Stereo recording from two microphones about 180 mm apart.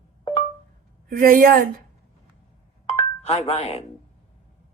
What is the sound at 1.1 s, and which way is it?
Speech, 50° right (ahead or behind).